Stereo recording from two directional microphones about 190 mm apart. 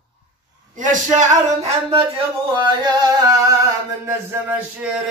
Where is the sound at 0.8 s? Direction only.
40° right (ahead or behind).